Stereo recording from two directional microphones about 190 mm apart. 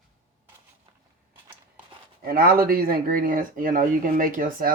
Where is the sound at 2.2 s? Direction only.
55° right (ahead or behind).